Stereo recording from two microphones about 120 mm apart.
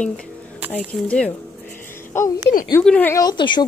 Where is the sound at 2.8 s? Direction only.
10° left (ahead or behind).